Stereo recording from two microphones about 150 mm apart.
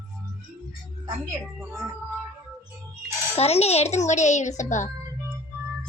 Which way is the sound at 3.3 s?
45° left (ahead or behind).